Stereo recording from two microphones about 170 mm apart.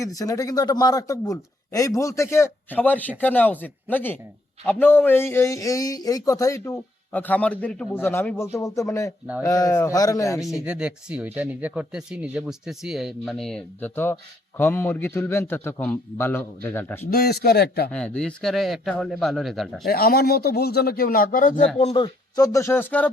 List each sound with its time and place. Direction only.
0.0 s a man's voice: 20° left (ahead or behind)
10.7 s a man's voice: 5° right (ahead or behind); by 17.1 s 15° left (ahead or behind)
17.1 s a man's voice: 65° left (ahead or behind)
17.9 s speech: 5° left (ahead or behind)
19.8 s speech: 65° left (ahead or behind)
21.8 s speech: 35° left (ahead or behind); by 23.1 s 10° left (ahead or behind)